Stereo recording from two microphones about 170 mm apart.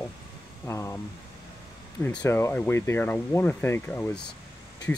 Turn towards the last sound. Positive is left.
turn(degrees=10)  # may be behind; listen again after turning